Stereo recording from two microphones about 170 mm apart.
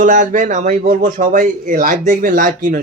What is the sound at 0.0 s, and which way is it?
A man's voice, 50° right (ahead or behind).